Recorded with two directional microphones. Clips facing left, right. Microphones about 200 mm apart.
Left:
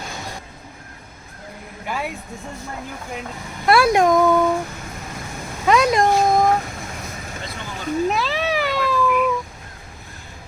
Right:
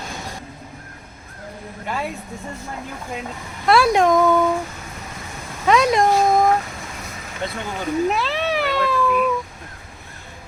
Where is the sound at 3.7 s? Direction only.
5° left (ahead or behind).